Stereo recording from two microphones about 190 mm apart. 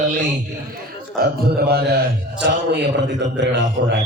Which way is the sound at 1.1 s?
55° right (ahead or behind).